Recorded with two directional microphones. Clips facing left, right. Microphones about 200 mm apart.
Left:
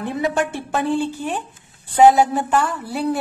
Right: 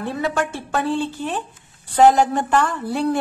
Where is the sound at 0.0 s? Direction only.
20° left (ahead or behind).